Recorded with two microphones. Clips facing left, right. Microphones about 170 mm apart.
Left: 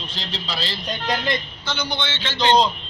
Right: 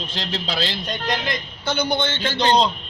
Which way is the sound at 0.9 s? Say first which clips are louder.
Left 1 dB; centre (ahead or behind).